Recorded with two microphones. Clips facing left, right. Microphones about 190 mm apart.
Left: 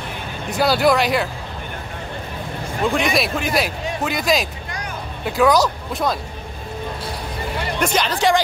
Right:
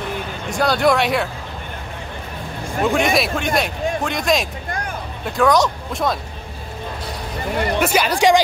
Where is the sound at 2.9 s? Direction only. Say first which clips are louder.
Right 2 dB; centre (ahead or behind).